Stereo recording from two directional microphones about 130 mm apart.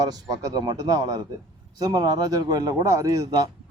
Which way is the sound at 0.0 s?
30° right (ahead or behind).